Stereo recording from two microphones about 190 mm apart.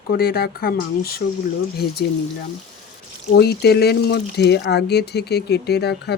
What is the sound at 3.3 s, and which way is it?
Speech, 60° left (ahead or behind).